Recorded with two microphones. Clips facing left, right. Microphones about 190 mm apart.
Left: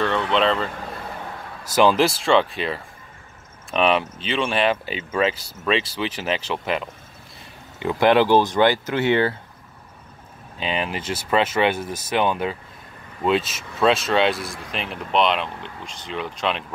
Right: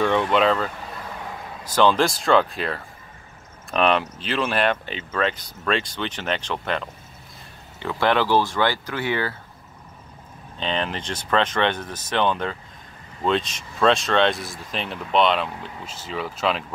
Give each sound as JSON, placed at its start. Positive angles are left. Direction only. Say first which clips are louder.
{"t": 0.3, "sound": "speech", "louder": "right 1 dB", "side_deg": -5}
{"t": 1.8, "sound": "speech", "louder": "left 1 dB", "side_deg": 5}
{"t": 7.8, "sound": "speech", "louder": "left 4 dB", "side_deg": 15}
{"t": 10.6, "sound": "speech", "louder": "even", "side_deg": 10}